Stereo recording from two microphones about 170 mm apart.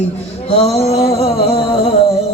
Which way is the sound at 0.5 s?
35° left (ahead or behind).